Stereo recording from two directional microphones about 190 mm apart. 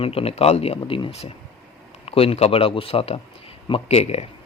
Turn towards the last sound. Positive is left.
turn(degrees=35)  # may be behind; listen again after turning